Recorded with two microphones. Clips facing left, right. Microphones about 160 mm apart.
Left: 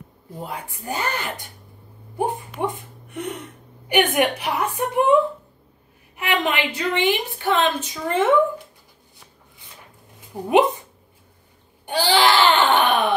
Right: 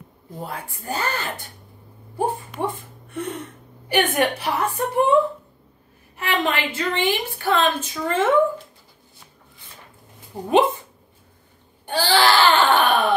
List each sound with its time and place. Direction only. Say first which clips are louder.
0.3 s a woman's voice: even; 15° left (ahead or behind)
6.1 s a woman's voice: left 1 dB; 15° left (ahead or behind)
10.3 s a woman's voice: left 1 dB; 15° left (ahead or behind)
11.8 s a sound: left 1 dB; 15° left (ahead or behind)